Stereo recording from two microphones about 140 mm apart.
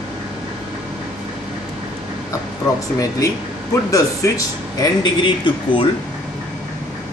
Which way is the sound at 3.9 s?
25° left (ahead or behind).